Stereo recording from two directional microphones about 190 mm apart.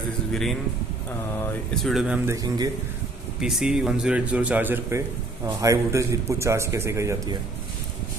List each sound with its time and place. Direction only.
0.3 s speech: centre (ahead or behind)
1.8 s a man's voice: centre (ahead or behind)
2.2 s a man's voice: 20° right (ahead or behind)
3.3 s a man's voice: centre (ahead or behind)